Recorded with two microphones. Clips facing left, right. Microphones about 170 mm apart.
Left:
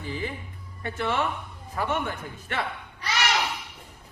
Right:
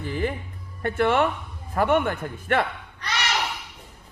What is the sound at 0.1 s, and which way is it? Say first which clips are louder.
Speech: right 6 dB; 55° right (ahead or behind).